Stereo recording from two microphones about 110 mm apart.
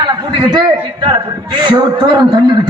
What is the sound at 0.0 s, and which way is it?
A man's voice, 40° right (ahead or behind).